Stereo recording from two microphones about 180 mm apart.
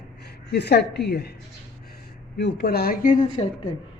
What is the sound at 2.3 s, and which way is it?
Speech, 65° left (ahead or behind).